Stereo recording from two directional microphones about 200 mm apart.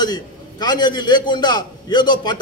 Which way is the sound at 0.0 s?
20° left (ahead or behind).